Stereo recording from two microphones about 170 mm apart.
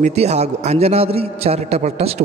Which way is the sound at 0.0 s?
40° right (ahead or behind).